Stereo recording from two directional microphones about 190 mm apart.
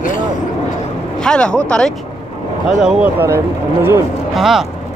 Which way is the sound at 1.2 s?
5° left (ahead or behind).